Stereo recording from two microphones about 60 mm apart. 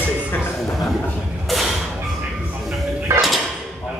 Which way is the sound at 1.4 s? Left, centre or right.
Centre.